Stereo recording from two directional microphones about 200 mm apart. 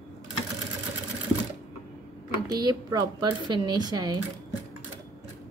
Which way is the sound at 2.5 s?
20° right (ahead or behind).